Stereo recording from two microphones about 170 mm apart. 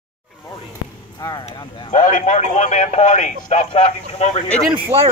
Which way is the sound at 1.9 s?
40° left (ahead or behind).